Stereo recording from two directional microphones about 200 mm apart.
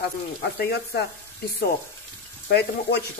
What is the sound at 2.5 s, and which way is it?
Frying, 55° left (ahead or behind).